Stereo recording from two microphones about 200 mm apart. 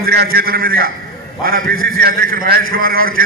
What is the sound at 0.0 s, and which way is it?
A man's voice, 50° right (ahead or behind).